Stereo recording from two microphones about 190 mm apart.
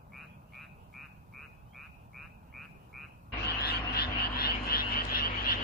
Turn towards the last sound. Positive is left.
turn(degrees=50)  # may be behind; listen again after turning